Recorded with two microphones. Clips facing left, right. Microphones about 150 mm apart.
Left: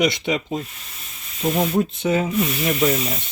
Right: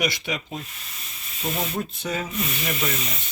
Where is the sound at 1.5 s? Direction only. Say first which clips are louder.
Left 9 dB; 25° left (ahead or behind).